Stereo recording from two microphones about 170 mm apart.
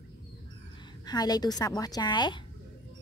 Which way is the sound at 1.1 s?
25° left (ahead or behind).